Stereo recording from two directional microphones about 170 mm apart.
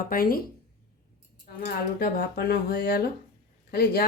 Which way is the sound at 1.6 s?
60° left (ahead or behind).